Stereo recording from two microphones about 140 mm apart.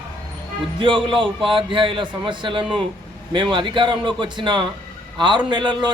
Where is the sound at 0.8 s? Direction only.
35° right (ahead or behind).